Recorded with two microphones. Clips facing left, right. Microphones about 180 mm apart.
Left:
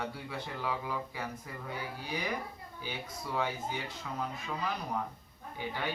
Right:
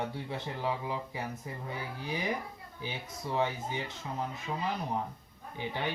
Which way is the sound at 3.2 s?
25° right (ahead or behind).